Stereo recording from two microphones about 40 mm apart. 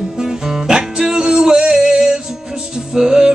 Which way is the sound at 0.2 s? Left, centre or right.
Centre.